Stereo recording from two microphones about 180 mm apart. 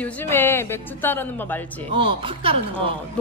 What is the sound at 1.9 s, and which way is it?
Speech, 30° right (ahead or behind).